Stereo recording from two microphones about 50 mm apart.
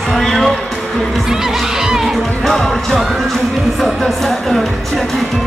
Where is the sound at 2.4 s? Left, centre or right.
Centre.